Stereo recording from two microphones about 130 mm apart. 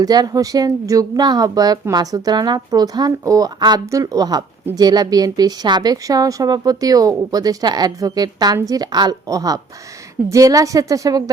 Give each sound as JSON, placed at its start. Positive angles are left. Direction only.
{"t": 0.0, "sound": "speech", "side_deg": -30}